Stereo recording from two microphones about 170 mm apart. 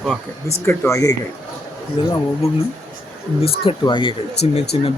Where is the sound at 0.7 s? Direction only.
15° left (ahead or behind).